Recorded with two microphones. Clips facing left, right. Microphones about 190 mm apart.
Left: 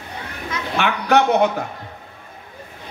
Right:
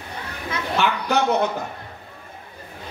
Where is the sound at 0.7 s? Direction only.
65° left (ahead or behind).